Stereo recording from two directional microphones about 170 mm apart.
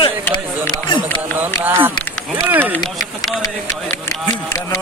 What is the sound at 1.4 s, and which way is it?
Speech, 10° right (ahead or behind).